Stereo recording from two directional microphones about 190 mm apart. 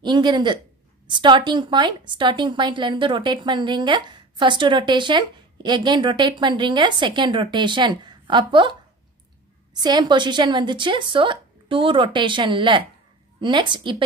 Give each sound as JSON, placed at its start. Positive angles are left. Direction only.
{"t": 0.0, "sound": "a woman's voice", "side_deg": -25}
{"t": 9.8, "sound": "a woman's voice", "side_deg": -20}